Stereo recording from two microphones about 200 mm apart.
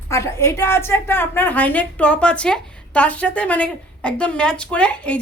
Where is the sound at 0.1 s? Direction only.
15° left (ahead or behind).